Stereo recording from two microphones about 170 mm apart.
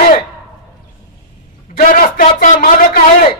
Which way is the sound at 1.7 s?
55° left (ahead or behind).